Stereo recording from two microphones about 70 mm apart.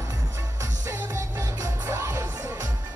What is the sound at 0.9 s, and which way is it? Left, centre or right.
Music, right.